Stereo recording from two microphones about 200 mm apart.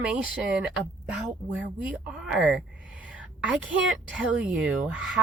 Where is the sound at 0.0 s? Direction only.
5° right (ahead or behind).